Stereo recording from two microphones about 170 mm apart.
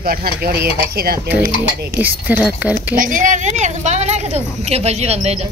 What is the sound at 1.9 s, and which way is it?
Speech, 10° right (ahead or behind).